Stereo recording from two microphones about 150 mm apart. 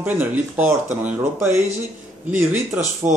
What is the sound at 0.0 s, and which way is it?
Speech, 10° right (ahead or behind).